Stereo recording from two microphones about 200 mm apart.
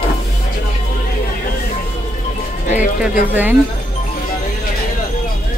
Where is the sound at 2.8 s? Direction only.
10° right (ahead or behind).